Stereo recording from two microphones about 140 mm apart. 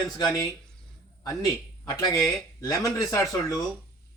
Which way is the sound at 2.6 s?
25° left (ahead or behind).